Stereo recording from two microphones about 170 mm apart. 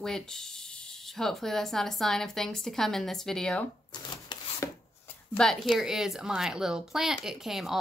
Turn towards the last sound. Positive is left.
turn(degrees=0)  # may be behind; listen again after turning